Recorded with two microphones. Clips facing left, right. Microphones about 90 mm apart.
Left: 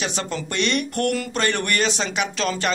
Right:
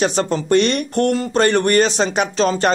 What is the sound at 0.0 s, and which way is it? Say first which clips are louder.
Speech: right 9 dB; 40° right (ahead or behind).